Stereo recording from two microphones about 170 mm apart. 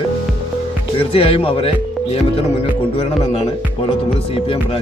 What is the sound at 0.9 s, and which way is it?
Speech, 35° left (ahead or behind).